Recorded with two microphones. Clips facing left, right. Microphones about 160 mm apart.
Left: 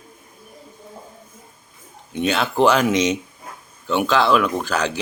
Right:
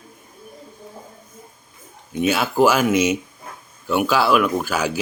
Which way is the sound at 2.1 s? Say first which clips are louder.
Right 1 dB; 5° right (ahead or behind).